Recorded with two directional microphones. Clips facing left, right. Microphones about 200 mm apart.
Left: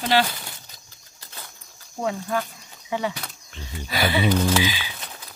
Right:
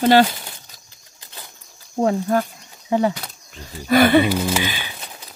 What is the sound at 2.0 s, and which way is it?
Speech, 40° right (ahead or behind).